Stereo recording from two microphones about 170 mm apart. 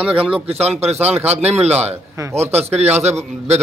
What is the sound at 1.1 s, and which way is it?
Speech, 10° right (ahead or behind).